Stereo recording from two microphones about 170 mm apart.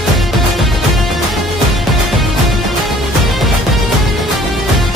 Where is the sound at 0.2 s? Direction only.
Centre (ahead or behind).